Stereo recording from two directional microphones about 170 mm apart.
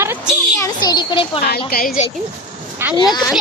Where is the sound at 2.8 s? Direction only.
15° right (ahead or behind).